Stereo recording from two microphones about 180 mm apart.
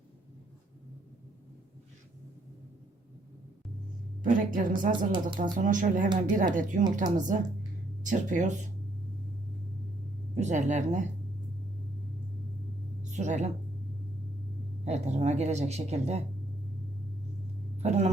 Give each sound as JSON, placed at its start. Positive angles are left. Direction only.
{"t": 4.2, "sound": "a woman's voice", "side_deg": -50}
{"t": 10.3, "sound": "speech", "side_deg": -40}
{"t": 13.0, "sound": "a sound", "side_deg": -40}
{"t": 14.8, "sound": "speech", "side_deg": -40}
{"t": 17.7, "sound": "speech", "side_deg": -40}